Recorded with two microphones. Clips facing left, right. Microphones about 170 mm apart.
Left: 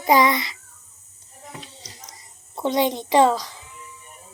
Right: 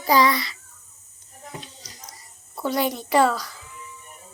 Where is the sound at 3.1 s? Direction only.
20° left (ahead or behind).